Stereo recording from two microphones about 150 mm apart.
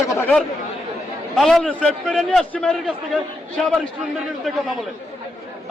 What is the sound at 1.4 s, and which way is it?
A man's voice, 5° left (ahead or behind).